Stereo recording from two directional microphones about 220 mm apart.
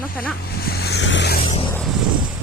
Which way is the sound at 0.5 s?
45° left (ahead or behind).